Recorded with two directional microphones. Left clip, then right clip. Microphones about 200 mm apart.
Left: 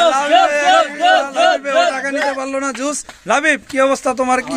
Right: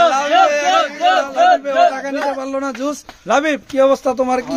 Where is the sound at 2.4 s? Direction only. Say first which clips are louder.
Left 1 dB; 5° left (ahead or behind).